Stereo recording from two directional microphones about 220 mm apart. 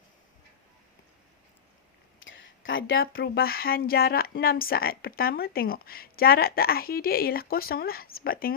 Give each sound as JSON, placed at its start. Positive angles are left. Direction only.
{"t": 2.1, "sound": "a woman's voice", "side_deg": 60}